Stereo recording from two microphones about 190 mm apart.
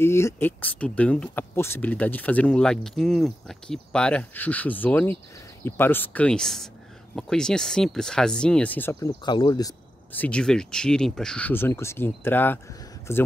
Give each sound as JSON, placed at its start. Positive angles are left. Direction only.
{"t": 0.0, "sound": "speech", "side_deg": 15}
{"t": 9.2, "sound": "speech", "side_deg": 25}
{"t": 10.1, "sound": "speech", "side_deg": 5}